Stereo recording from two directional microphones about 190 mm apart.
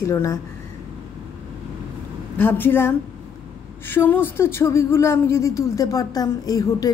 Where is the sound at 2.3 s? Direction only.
10° left (ahead or behind).